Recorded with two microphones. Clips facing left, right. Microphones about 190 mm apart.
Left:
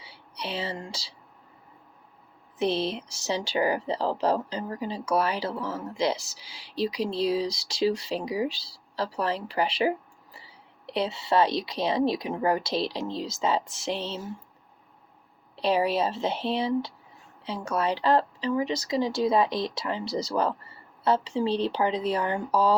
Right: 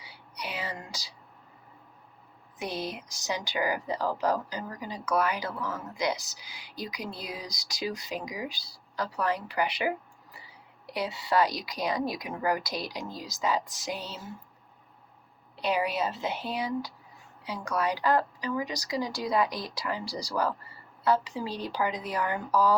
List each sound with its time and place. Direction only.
0.0 s a sound: 30° left (ahead or behind)
2.6 s speech: 30° left (ahead or behind)
15.5 s speech: 30° left (ahead or behind)